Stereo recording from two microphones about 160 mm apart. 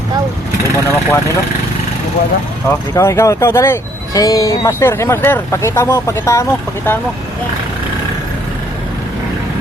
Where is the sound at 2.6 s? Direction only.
20° left (ahead or behind).